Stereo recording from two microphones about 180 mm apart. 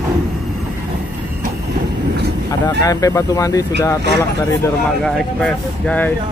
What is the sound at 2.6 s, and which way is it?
Speech, 20° left (ahead or behind).